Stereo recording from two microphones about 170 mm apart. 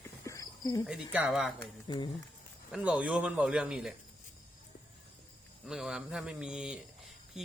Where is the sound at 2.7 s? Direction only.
5° right (ahead or behind).